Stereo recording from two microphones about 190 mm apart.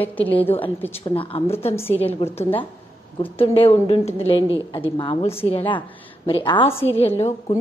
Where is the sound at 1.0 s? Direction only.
30° left (ahead or behind).